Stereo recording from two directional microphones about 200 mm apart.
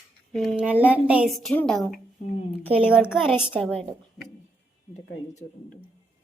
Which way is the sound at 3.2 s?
5° right (ahead or behind).